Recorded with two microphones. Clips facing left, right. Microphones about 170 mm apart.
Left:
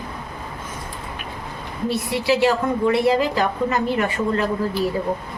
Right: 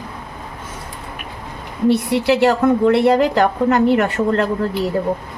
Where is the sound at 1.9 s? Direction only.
65° right (ahead or behind).